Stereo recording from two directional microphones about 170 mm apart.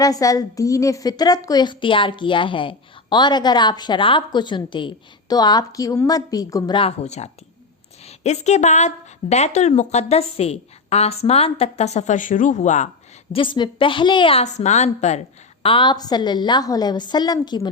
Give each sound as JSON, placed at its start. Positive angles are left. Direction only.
{"t": 0.0, "sound": "a woman's voice", "side_deg": 20}
{"t": 13.3, "sound": "a woman's voice", "side_deg": 30}
{"t": 15.6, "sound": "a woman's voice", "side_deg": 30}